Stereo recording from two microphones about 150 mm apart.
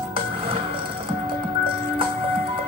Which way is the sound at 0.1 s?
40° right (ahead or behind).